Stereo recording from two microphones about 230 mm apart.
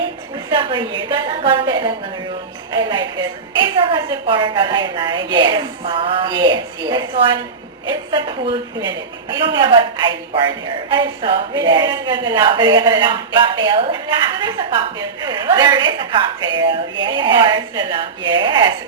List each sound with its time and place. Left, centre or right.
0.5 s a woman's voice: right